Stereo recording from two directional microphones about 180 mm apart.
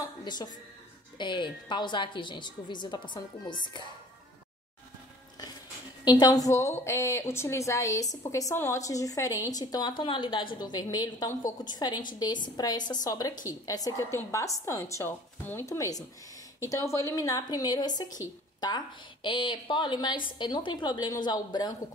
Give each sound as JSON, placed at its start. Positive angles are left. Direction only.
{"t": 0.2, "sound": "a woman's voice", "side_deg": 25}
{"t": 6.0, "sound": "a woman's voice", "side_deg": 20}